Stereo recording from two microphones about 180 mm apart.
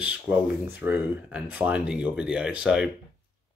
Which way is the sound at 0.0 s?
10° right (ahead or behind).